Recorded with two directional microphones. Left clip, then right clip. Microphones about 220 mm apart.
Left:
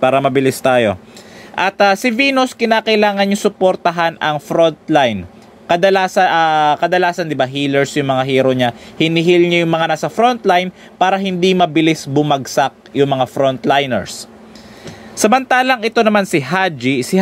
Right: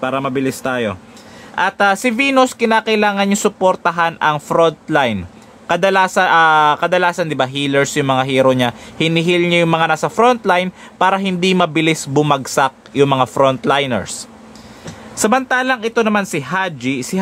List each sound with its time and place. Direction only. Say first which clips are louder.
0.0 s speech: left 6 dB; 25° left (ahead or behind)
1.5 s speech: left 1 dB; 15° left (ahead or behind)